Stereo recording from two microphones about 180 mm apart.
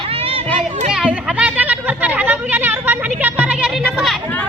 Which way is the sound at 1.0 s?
10° right (ahead or behind).